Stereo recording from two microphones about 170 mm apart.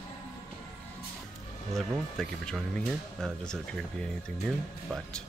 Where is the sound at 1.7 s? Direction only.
Centre (ahead or behind).